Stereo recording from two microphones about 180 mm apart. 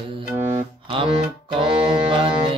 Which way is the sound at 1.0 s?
30° right (ahead or behind).